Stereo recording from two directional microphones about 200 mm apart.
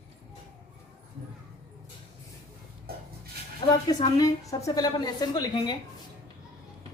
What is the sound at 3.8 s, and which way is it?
A woman's voice, 20° left (ahead or behind).